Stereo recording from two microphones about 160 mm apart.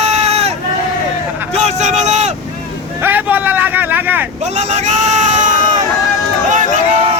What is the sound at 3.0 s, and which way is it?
Vehicle, 10° right (ahead or behind).